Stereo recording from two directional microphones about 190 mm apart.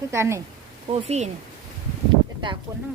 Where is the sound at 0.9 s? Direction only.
35° right (ahead or behind).